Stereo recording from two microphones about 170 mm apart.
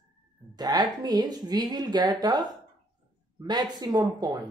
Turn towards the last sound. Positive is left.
turn(degrees=-25)  # may be behind; listen again after turning